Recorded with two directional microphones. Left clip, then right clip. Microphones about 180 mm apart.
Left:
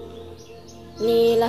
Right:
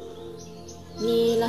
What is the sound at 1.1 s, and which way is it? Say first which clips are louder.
Speech: left 5 dB; 20° right (ahead or behind).